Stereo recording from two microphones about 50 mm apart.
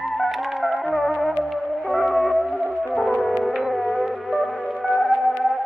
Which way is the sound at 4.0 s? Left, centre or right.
Centre.